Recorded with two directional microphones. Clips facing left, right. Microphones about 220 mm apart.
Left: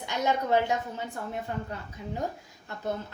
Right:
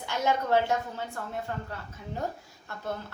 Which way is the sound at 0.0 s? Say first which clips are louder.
Even; 15° left (ahead or behind).